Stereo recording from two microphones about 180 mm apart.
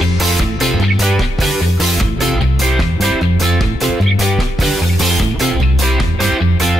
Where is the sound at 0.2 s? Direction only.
Centre (ahead or behind).